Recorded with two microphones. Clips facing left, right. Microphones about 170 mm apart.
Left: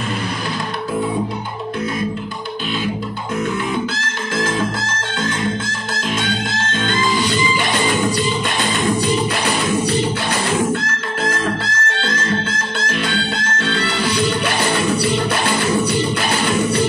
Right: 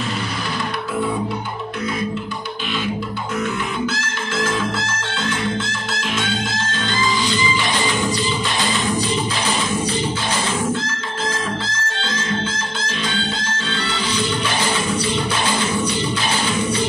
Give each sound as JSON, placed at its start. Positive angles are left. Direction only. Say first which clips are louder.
{"t": 10.7, "sound": "music", "louder": "left 2 dB", "side_deg": 65}
{"t": 13.6, "sound": "music", "louder": "left 4 dB", "side_deg": 65}